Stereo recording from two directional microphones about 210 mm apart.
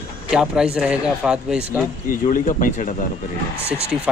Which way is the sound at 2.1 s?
40° left (ahead or behind).